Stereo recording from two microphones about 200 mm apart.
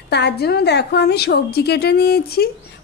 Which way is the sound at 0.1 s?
55° left (ahead or behind).